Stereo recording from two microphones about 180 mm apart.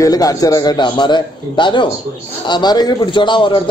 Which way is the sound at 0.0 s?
20° left (ahead or behind).